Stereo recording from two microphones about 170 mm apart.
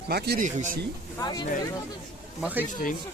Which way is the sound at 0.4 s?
50° right (ahead or behind).